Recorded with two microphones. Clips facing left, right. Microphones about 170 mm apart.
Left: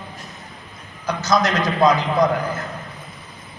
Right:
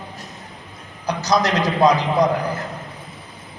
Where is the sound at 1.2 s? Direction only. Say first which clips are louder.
Even; 35° right (ahead or behind).